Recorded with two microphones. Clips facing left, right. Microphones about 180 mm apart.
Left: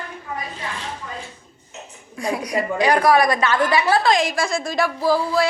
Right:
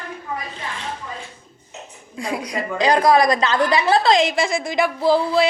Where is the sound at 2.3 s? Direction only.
30° right (ahead or behind).